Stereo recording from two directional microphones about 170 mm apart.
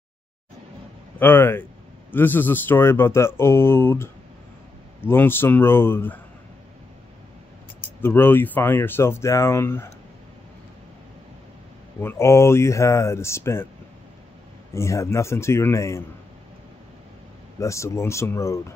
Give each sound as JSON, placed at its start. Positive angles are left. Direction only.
{"t": 1.2, "sound": "speech", "side_deg": 15}
{"t": 8.0, "sound": "speech", "side_deg": 10}
{"t": 12.0, "sound": "speech", "side_deg": 15}
{"t": 14.7, "sound": "speech", "side_deg": 15}
{"t": 17.6, "sound": "speech", "side_deg": 15}